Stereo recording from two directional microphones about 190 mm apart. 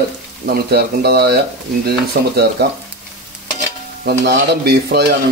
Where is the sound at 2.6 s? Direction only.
60° right (ahead or behind).